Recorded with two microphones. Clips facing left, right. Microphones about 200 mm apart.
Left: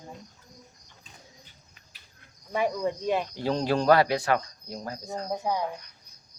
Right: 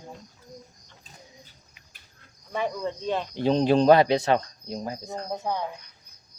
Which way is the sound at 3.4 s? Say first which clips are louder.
Right 5 dB; 20° right (ahead or behind).